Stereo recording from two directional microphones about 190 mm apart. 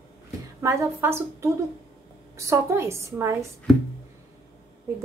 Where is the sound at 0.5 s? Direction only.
15° right (ahead or behind).